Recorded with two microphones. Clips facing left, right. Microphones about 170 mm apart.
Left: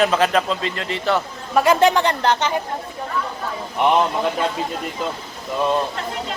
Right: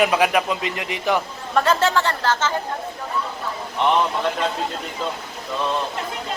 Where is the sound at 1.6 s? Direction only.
15° left (ahead or behind).